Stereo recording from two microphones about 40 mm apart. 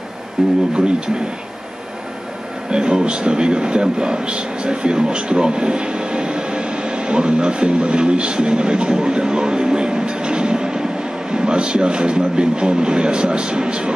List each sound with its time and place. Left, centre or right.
0.4 s a man's voice: centre
2.7 s a man's voice: right